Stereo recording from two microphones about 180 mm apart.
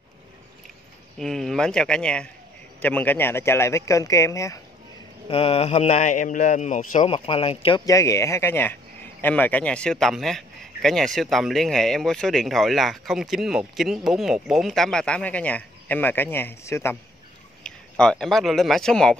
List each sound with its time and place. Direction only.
1.1 s speech: centre (ahead or behind)
5.3 s a man's voice: 35° left (ahead or behind)
7.1 s a man's voice: 30° left (ahead or behind)
7.8 s speech: 15° left (ahead or behind)